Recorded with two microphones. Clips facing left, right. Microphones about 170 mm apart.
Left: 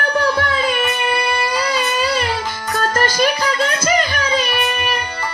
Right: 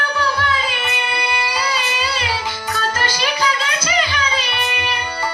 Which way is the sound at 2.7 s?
50° left (ahead or behind).